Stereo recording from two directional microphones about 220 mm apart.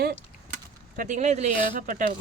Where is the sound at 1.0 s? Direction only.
35° right (ahead or behind).